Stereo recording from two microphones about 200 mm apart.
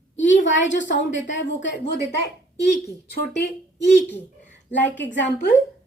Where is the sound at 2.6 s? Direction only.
55° left (ahead or behind).